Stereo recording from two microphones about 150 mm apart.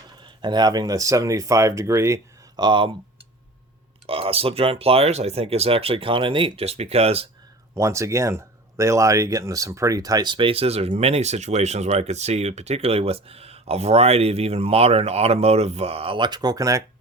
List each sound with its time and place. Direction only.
0.4 s speech: 30° right (ahead or behind)
4.0 s speech: 40° right (ahead or behind)
7.8 s speech: 20° right (ahead or behind)